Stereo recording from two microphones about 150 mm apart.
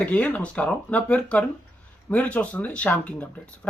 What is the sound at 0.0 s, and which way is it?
Speech, 10° left (ahead or behind).